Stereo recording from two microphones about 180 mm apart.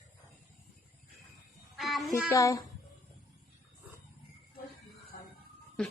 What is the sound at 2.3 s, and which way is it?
Speech, 20° left (ahead or behind).